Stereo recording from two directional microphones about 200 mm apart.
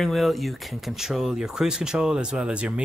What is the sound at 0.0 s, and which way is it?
Speech, centre (ahead or behind).